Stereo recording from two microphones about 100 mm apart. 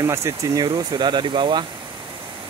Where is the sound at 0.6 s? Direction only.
45° right (ahead or behind).